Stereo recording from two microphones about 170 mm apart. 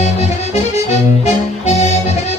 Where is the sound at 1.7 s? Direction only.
40° left (ahead or behind).